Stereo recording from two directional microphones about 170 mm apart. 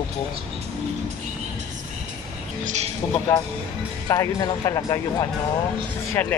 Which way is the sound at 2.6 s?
40° right (ahead or behind).